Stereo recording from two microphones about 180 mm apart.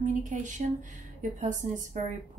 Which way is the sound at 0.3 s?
45° right (ahead or behind).